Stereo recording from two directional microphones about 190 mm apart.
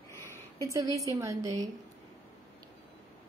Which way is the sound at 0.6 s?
15° right (ahead or behind).